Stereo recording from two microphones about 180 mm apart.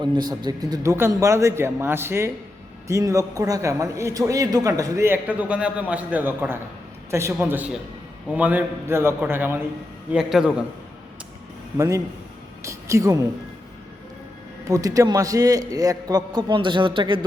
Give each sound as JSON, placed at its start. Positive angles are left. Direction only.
{"t": 0.2, "sound": "a man's voice", "side_deg": -20}
{"t": 11.8, "sound": "a man's voice", "side_deg": -20}
{"t": 14.7, "sound": "a man's voice", "side_deg": -20}